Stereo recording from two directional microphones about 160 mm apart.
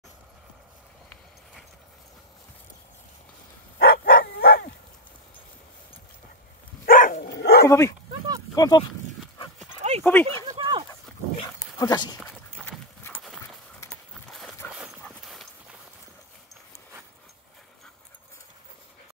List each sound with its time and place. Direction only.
3.7 s bow-wow: 65° left (ahead or behind)
6.9 s dog: 60° left (ahead or behind); by 7.6 s 80° left
7.6 s speech: 20° left (ahead or behind)
10.0 s speech: 10° left (ahead or behind)
10.6 s dog: 35° right (ahead or behind)
11.3 s dog: 25° left (ahead or behind)
12.6 s clip-clop: 15° left (ahead or behind)
13.2 s horse: centre (ahead or behind)
15.0 s dog: centre (ahead or behind)